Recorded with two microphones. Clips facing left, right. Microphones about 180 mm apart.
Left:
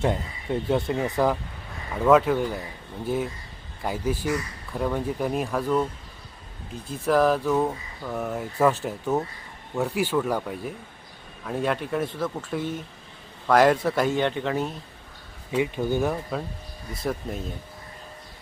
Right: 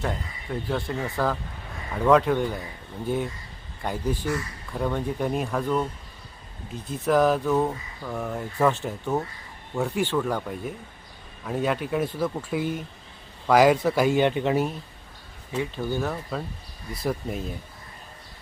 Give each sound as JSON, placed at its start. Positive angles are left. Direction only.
{"t": 0.0, "sound": "speech", "side_deg": 25}
{"t": 2.0, "sound": "speech", "side_deg": 5}
{"t": 3.8, "sound": "speech", "side_deg": 5}
{"t": 7.0, "sound": "speech", "side_deg": 0}
{"t": 15.5, "sound": "speech", "side_deg": 15}
{"t": 16.9, "sound": "speech", "side_deg": 0}